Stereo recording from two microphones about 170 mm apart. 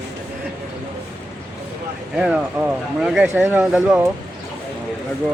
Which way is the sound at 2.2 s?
5° right (ahead or behind).